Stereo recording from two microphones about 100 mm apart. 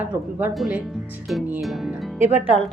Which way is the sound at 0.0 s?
20° right (ahead or behind).